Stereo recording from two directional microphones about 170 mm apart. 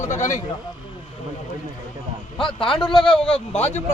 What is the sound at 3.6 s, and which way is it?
Speech, 10° left (ahead or behind).